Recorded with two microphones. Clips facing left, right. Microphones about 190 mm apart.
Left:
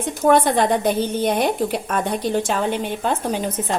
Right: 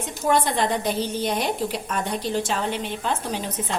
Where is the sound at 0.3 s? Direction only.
55° left (ahead or behind).